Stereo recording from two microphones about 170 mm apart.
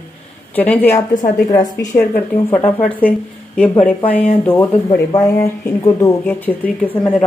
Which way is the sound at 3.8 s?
10° left (ahead or behind).